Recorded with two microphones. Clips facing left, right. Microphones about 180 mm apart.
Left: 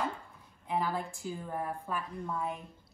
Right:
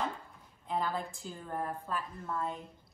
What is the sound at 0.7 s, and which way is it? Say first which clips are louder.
A woman's voice: left 1 dB; 5° left (ahead or behind).